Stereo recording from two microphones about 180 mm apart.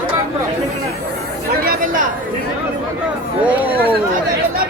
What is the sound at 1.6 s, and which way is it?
Speech, 50° right (ahead or behind).